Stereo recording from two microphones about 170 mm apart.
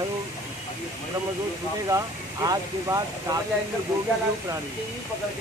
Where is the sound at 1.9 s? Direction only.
20° right (ahead or behind).